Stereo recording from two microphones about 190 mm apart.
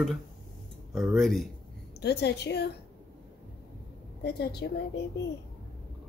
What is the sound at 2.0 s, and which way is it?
Speech, 60° left (ahead or behind).